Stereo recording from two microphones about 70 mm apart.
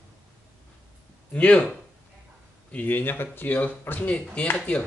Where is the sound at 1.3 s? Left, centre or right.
Left.